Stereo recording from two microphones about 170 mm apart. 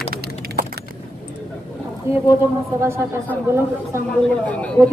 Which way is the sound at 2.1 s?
15° right (ahead or behind).